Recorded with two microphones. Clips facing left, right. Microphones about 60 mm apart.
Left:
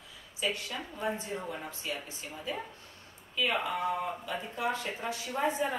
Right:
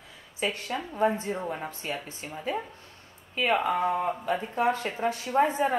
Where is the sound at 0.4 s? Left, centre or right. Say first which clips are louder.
Right 4 dB; right.